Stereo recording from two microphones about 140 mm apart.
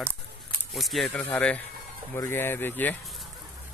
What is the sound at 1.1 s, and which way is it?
Speech, 10° left (ahead or behind).